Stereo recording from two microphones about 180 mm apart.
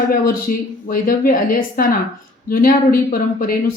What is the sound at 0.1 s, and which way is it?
A woman's voice, 50° left (ahead or behind).